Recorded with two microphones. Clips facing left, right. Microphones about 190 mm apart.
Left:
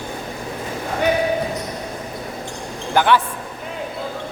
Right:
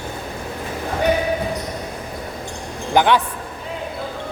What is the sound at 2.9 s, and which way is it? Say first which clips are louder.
Speech: right 1 dB; 15° right (ahead or behind).